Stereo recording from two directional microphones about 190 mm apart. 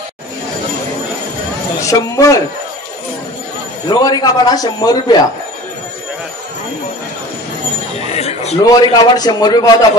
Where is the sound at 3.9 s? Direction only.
20° left (ahead or behind).